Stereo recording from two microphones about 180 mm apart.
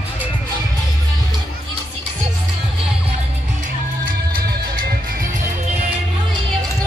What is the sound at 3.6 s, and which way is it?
Music, 55° right (ahead or behind).